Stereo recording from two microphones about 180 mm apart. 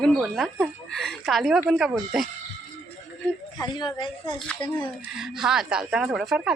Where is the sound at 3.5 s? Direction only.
25° left (ahead or behind).